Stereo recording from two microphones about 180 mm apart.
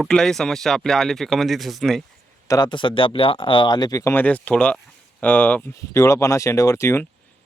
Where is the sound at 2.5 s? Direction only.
25° left (ahead or behind).